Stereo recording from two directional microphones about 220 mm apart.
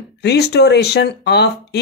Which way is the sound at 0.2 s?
50° left (ahead or behind).